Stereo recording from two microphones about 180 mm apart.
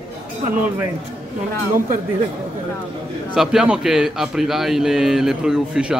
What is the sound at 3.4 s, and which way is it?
A man's voice, 5° right (ahead or behind).